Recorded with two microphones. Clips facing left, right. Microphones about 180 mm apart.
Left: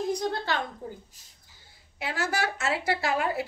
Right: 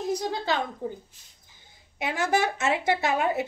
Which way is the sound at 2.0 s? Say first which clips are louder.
Right 4 dB; 20° right (ahead or behind).